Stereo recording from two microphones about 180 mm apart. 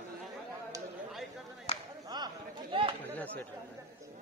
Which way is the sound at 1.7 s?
35° left (ahead or behind).